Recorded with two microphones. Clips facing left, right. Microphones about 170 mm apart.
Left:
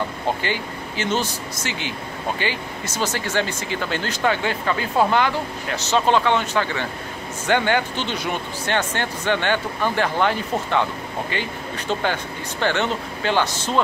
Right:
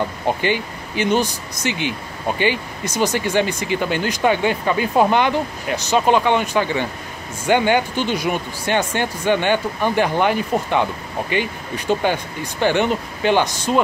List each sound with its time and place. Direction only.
0.4 s speech: 15° right (ahead or behind)